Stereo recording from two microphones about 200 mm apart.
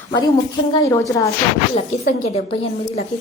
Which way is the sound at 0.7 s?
15° left (ahead or behind).